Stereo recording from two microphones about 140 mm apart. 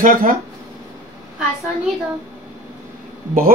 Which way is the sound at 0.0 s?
75° right (ahead or behind).